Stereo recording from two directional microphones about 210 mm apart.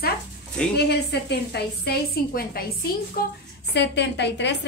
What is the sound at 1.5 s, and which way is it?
A woman's voice, 45° left (ahead or behind).